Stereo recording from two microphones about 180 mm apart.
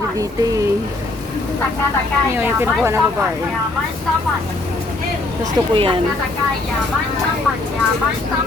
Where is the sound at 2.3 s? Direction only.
10° right (ahead or behind).